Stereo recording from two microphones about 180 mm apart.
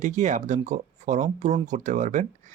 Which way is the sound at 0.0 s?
45° right (ahead or behind).